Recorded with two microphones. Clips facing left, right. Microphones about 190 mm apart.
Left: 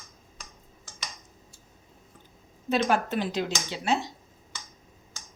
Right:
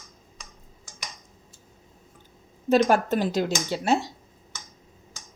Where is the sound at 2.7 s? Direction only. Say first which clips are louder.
Right 5 dB; 45° right (ahead or behind).